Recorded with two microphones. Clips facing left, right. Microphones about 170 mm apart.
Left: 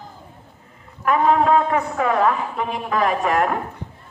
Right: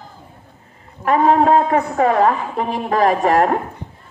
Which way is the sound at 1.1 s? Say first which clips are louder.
Right 3 dB; 40° right (ahead or behind).